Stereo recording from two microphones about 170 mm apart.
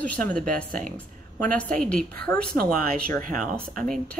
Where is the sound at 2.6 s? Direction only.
60° right (ahead or behind).